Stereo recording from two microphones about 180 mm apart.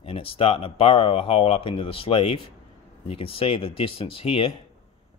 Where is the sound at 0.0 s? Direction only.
30° left (ahead or behind).